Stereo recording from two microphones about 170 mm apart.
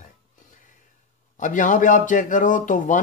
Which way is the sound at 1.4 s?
50° left (ahead or behind).